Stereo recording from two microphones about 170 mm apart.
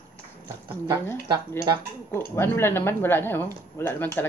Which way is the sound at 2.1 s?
15° left (ahead or behind).